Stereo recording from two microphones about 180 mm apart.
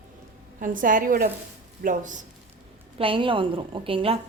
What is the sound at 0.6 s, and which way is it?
A woman's voice, 50° right (ahead or behind).